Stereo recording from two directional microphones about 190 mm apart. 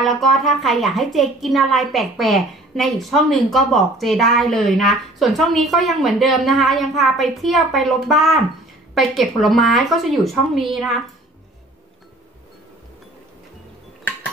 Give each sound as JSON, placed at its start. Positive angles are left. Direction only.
{"t": 0.0, "sound": "speech", "side_deg": 0}